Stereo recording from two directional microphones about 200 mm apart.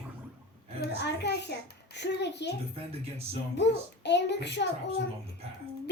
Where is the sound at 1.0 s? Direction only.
55° left (ahead or behind).